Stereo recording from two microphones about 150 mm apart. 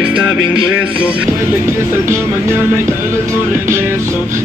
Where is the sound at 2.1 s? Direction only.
15° right (ahead or behind).